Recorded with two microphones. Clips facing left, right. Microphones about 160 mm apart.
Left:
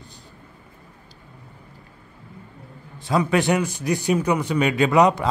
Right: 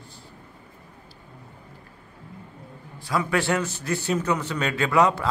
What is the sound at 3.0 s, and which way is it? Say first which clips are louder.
A man's voice: left 4 dB; 20° left (ahead or behind).